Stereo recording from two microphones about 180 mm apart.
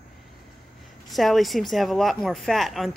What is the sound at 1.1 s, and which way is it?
Speech, centre (ahead or behind).